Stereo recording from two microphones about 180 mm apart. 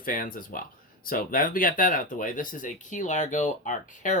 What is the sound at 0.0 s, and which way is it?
Speech, 50° left (ahead or behind).